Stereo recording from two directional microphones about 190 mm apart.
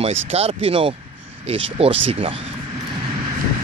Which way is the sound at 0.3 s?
35° right (ahead or behind).